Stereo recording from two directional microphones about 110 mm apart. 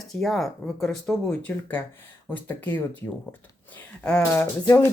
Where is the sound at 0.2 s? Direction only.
5° left (ahead or behind).